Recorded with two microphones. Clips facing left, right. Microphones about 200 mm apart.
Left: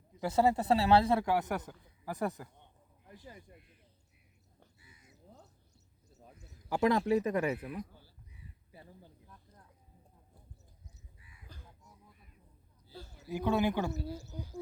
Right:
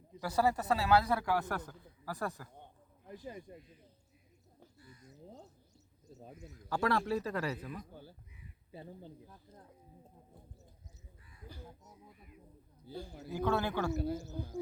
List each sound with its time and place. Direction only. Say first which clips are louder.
0.2 s a man's voice: left 3 dB; 25° left (ahead or behind)
4.8 s crow: right 9 dB; 5° left (ahead or behind)
6.7 s a man's voice: left 4 dB; 20° left (ahead or behind)
8.7 s a sound: right 8 dB; 25° right (ahead or behind)
12.9 s a man's voice: right 6 dB; 15° right (ahead or behind)
13.3 s speech: left 3 dB; 15° left (ahead or behind)
13.9 s speech: right 5 dB; 55° right (ahead or behind)